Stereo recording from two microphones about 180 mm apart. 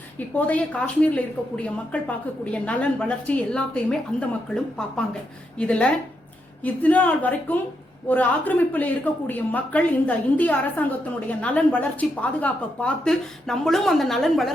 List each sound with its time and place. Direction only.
0.3 s a woman's voice: 10° left (ahead or behind)